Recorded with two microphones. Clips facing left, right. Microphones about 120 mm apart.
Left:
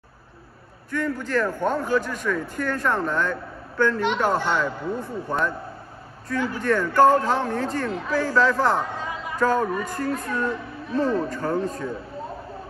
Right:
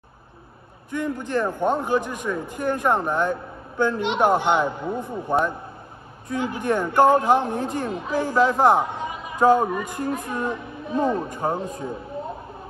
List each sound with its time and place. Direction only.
0.9 s speech: 20° right (ahead or behind)